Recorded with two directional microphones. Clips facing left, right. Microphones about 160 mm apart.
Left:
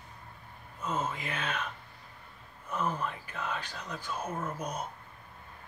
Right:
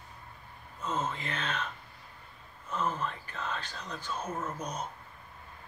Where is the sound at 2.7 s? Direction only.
10° left (ahead or behind).